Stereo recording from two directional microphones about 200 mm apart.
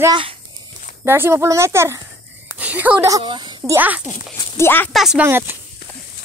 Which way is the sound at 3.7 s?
10° right (ahead or behind).